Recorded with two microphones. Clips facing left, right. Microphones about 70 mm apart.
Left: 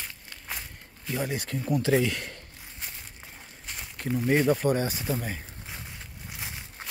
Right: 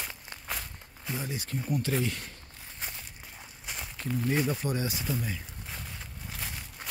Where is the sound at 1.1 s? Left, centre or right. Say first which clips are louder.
Left 5 dB; left.